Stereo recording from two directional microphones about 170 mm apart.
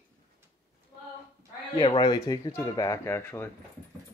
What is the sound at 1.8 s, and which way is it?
Speech, 25° left (ahead or behind).